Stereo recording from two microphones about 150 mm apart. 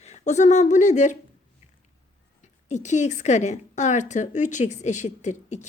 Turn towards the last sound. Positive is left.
turn(degrees=50)  # may be behind; listen again after turning